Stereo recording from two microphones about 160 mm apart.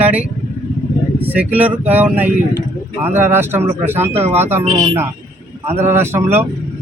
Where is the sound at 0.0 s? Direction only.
10° right (ahead or behind).